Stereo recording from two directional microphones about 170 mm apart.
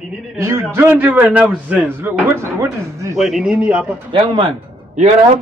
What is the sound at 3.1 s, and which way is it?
Speech, centre (ahead or behind).